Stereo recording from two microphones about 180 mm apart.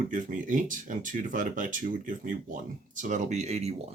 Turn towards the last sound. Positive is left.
turn(degrees=-35)  # may be behind; listen again after turning